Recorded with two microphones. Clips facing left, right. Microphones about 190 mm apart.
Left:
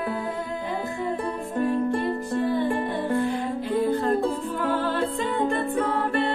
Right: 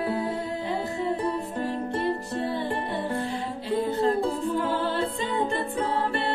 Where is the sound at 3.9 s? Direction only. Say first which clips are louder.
Right 1 dB; 50° left (ahead or behind).